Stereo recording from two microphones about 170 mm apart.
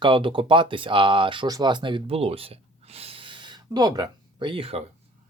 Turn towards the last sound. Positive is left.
turn(degrees=-35)  # may be behind; listen again after turning